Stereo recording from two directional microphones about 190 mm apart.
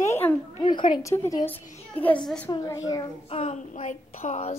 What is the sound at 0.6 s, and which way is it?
Speech, 25° left (ahead or behind).